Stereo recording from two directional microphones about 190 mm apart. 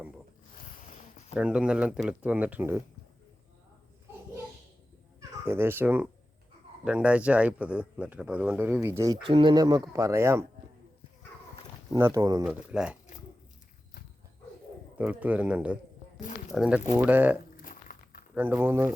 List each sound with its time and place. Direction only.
1.4 s speech: 5° right (ahead or behind)
5.5 s speech: 10° right (ahead or behind)
9.2 s speech: 25° right (ahead or behind)
11.9 s speech: 10° right (ahead or behind)
12.7 s speech: 5° right (ahead or behind)
14.9 s speech: 10° right (ahead or behind)
17.6 s a sound: 45° left (ahead or behind)
18.3 s speech: 10° right (ahead or behind)